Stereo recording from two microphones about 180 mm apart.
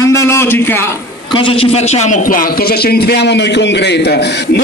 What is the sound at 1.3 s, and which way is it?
A man's voice, 30° left (ahead or behind).